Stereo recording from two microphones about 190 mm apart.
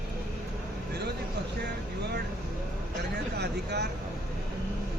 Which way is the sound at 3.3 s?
60° right (ahead or behind).